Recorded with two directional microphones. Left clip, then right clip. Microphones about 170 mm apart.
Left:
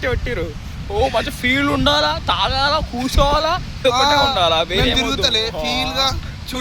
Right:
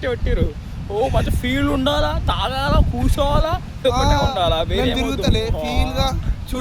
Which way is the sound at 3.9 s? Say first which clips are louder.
Left 4 dB; 15° right (ahead or behind).